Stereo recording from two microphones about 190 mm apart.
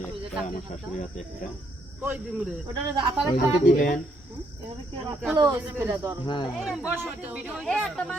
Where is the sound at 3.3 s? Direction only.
45° left (ahead or behind).